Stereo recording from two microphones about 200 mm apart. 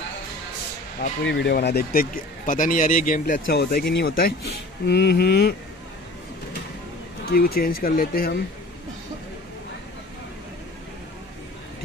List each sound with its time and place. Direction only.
1.2 s speech: 55° left (ahead or behind)
7.2 s speech: 50° left (ahead or behind)